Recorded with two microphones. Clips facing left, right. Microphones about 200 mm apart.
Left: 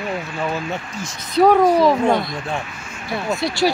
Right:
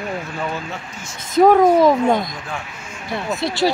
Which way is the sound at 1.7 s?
20° right (ahead or behind).